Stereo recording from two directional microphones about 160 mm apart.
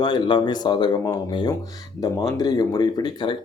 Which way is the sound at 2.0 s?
25° left (ahead or behind).